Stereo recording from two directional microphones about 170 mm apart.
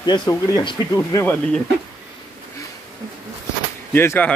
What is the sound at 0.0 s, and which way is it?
Speech, 25° left (ahead or behind).